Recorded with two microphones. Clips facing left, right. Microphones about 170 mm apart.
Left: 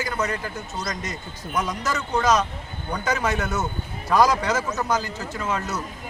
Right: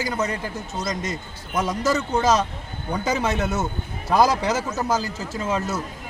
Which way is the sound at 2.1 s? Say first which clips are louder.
Left 4 dB; 25° right (ahead or behind).